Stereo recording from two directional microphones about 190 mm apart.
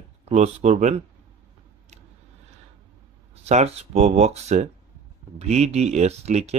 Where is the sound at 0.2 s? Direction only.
35° right (ahead or behind).